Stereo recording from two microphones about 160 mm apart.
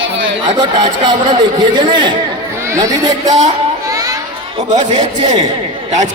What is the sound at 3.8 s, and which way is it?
Children playing, 20° right (ahead or behind).